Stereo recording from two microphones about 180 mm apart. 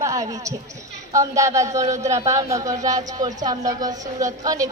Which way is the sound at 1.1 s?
15° right (ahead or behind).